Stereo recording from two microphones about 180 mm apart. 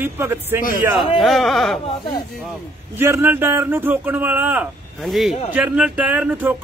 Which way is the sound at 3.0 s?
15° right (ahead or behind).